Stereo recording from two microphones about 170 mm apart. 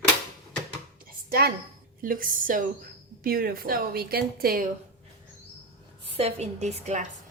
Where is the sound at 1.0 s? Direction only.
65° right (ahead or behind).